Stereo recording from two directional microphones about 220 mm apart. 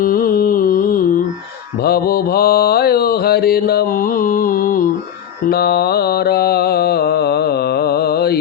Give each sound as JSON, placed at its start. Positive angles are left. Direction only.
{"t": 0.0, "sound": "carnatic music", "side_deg": 40}
{"t": 1.8, "sound": "mantra", "side_deg": 45}